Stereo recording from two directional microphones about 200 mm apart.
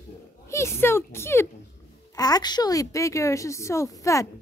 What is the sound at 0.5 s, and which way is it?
A woman's voice, 15° left (ahead or behind).